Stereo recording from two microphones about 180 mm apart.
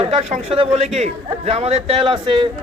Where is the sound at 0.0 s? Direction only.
30° right (ahead or behind).